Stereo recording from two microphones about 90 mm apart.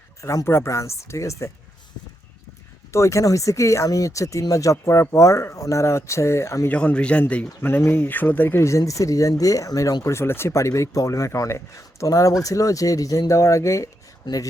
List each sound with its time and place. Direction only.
0.2 s speech: 35° left (ahead or behind)
2.9 s speech: 35° left (ahead or behind)
6.7 s speech: 15° left (ahead or behind); by 14.4 s 40° left (ahead or behind)